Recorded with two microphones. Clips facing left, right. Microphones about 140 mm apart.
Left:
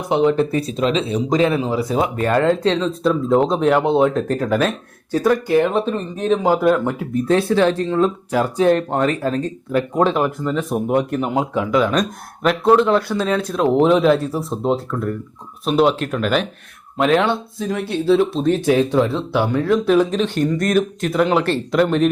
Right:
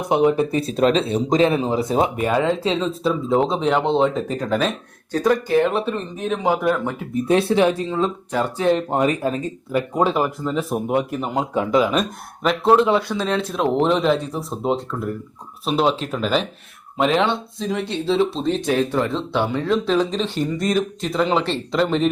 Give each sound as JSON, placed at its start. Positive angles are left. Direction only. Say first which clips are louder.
{"t": 0.1, "sound": "speech", "louder": "left 1 dB", "side_deg": -10}
{"t": 0.7, "sound": "speech", "louder": "right 2 dB", "side_deg": -45}
{"t": 1.3, "sound": "speech", "louder": "even", "side_deg": -25}
{"t": 2.2, "sound": "speech", "louder": "left 3 dB", "side_deg": -5}
{"t": 5.7, "sound": "speech", "louder": "left 3 dB", "side_deg": -5}
{"t": 7.3, "sound": "speech", "louder": "left 1 dB", "side_deg": -20}
{"t": 11.5, "sound": "speech", "louder": "right 3 dB", "side_deg": -25}
{"t": 11.8, "sound": "speech", "louder": "left 1 dB", "side_deg": -5}